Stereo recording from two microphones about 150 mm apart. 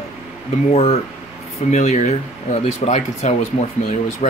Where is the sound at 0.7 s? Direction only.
45° left (ahead or behind).